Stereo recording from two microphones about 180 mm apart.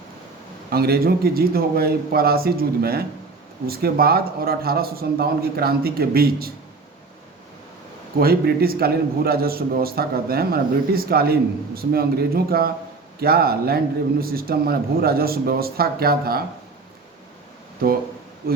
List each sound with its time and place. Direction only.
0.7 s a man's voice: 60° right (ahead or behind)
8.2 s a man's voice: 55° right (ahead or behind)